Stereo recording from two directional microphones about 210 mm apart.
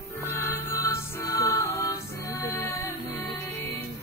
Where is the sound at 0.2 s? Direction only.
10° left (ahead or behind).